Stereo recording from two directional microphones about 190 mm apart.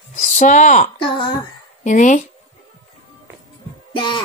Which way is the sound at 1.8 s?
40° left (ahead or behind).